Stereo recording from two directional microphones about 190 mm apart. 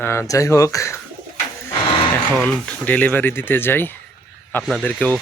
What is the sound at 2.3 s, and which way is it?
Speech, 5° left (ahead or behind).